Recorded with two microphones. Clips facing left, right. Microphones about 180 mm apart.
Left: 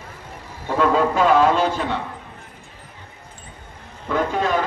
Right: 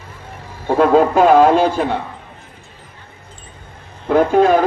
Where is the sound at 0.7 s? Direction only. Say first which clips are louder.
Right 6 dB; 50° right (ahead or behind).